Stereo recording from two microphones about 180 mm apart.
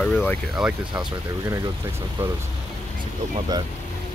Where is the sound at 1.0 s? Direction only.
20° right (ahead or behind).